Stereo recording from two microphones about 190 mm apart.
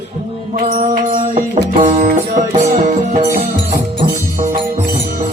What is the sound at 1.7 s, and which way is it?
Music, 35° right (ahead or behind).